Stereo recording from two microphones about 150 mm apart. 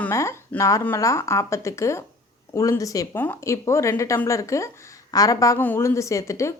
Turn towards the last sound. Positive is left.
turn(degrees=20)  # may be behind; listen again after turning